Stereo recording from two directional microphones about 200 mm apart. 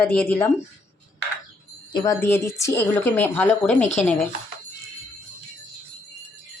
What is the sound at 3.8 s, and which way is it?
Speech, 35° left (ahead or behind).